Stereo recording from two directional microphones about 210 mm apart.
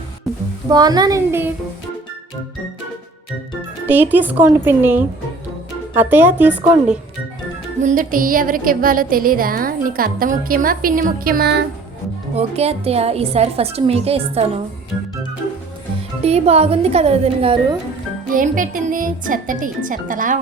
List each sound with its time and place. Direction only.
0.7 s speech: 20° right (ahead or behind)
3.8 s speech: 10° right (ahead or behind)
7.8 s a woman's voice: 40° right (ahead or behind)
12.4 s a woman's voice: 30° right (ahead or behind)
16.2 s a woman's voice: 30° right (ahead or behind)
18.3 s speech: 40° right (ahead or behind)